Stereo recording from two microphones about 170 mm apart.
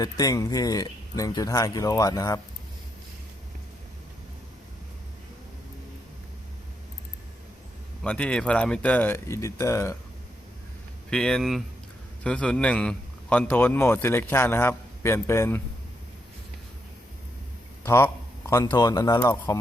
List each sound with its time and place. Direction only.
0.0 s speech: 20° left (ahead or behind)
8.0 s a man's voice: 5° left (ahead or behind)
11.1 s a man's voice: 5° left (ahead or behind)
17.8 s speech: 15° left (ahead or behind)